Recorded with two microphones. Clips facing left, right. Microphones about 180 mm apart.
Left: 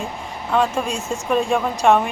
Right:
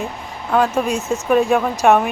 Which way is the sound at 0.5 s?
5° right (ahead or behind).